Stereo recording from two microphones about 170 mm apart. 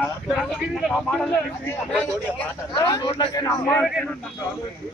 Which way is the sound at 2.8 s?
25° left (ahead or behind).